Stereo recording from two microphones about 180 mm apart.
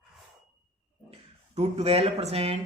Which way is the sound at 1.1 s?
35° right (ahead or behind).